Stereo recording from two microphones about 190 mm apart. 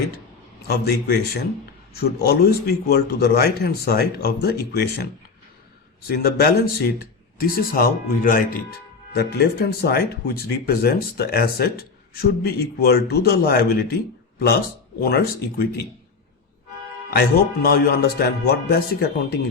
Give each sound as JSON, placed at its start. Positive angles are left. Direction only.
{"t": 0.7, "sound": "speech", "side_deg": 55}
{"t": 6.1, "sound": "speech", "side_deg": 55}
{"t": 9.1, "sound": "speech", "side_deg": 55}
{"t": 17.1, "sound": "speech", "side_deg": 55}